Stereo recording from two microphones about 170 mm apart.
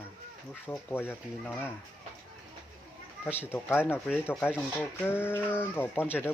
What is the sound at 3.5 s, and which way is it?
Speech, 10° left (ahead or behind).